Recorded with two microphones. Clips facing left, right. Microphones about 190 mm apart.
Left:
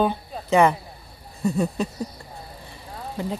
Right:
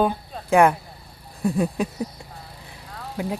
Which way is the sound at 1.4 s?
Centre (ahead or behind).